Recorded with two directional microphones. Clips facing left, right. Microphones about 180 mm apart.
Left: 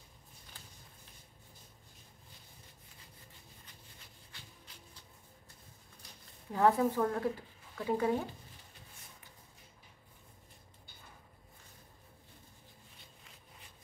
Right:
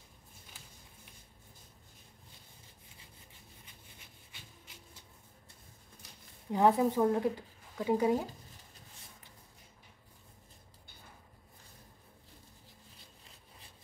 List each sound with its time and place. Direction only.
6.5 s speech: 20° right (ahead or behind)